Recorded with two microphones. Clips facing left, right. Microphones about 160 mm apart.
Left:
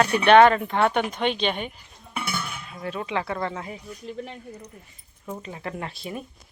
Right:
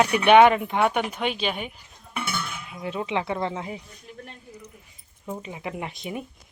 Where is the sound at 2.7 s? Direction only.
15° right (ahead or behind).